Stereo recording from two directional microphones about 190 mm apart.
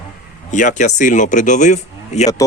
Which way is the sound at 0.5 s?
40° left (ahead or behind).